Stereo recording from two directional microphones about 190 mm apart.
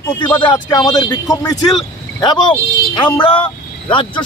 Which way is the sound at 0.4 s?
25° left (ahead or behind).